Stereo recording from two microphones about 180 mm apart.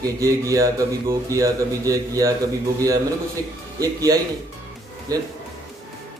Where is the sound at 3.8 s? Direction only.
20° right (ahead or behind).